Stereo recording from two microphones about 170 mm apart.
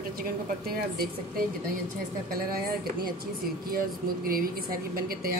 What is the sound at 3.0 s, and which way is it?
A woman's voice, 60° right (ahead or behind).